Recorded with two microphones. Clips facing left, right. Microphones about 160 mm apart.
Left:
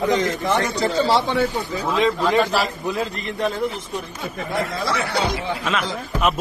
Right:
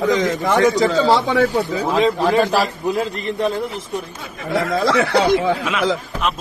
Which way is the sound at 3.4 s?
Centre (ahead or behind).